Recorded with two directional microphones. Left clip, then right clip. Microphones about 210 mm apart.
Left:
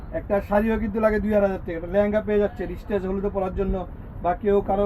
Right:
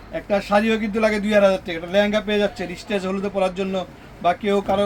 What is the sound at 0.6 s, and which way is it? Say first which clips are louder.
A man's voice: right 2 dB; 15° right (ahead or behind).